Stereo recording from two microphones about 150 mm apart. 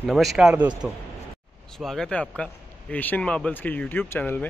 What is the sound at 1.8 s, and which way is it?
Speech, 5° left (ahead or behind).